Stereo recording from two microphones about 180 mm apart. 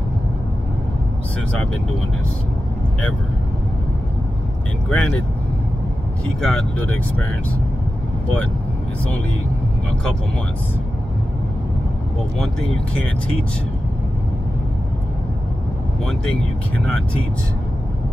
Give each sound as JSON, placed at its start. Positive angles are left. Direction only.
{"t": 4.8, "sound": "speech", "side_deg": 5}
{"t": 6.4, "sound": "speech", "side_deg": 5}
{"t": 16.7, "sound": "speech", "side_deg": 5}